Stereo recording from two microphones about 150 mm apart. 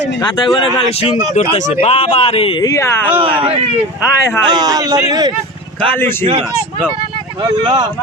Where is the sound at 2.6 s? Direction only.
20° left (ahead or behind).